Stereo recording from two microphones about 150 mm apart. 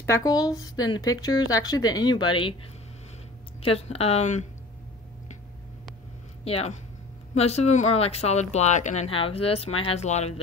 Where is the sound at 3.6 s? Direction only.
40° left (ahead or behind).